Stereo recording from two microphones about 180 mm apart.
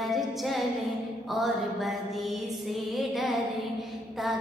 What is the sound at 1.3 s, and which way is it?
Music, centre (ahead or behind).